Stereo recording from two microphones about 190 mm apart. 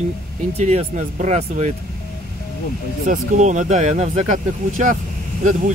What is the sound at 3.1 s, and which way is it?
Speech, 40° right (ahead or behind).